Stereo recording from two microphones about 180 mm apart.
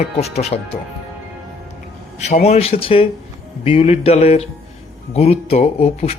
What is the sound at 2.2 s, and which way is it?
Speech, 40° left (ahead or behind).